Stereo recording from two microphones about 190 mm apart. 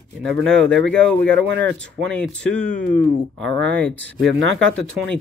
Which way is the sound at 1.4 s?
75° right (ahead or behind).